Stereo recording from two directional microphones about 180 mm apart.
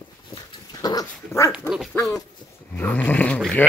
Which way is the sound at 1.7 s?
Centre (ahead or behind).